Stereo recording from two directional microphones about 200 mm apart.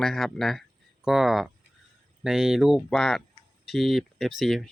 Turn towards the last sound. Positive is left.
turn(degrees=0)  # may be behind; listen again after turning